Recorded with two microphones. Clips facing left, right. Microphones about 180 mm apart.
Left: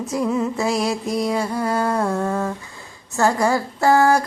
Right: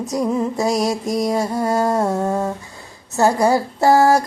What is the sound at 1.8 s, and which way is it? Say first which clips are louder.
A woman's voice: right 2 dB; 20° right (ahead or behind).